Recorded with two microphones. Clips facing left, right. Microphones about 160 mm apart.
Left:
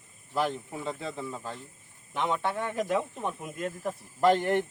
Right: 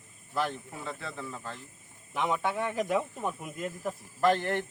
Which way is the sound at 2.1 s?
5° right (ahead or behind).